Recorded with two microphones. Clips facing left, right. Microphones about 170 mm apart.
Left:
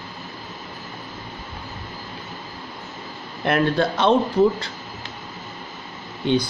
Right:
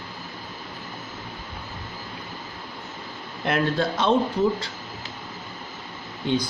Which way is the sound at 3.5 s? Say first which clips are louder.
Left 4 dB; 65° left (ahead or behind).